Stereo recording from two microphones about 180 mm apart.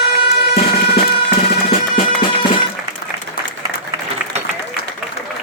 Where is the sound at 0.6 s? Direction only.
35° left (ahead or behind).